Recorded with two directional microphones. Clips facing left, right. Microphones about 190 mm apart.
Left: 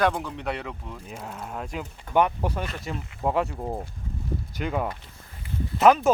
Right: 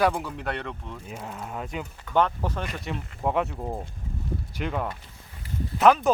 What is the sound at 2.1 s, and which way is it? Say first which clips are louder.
Speech: left 1 dB; 15° left (ahead or behind).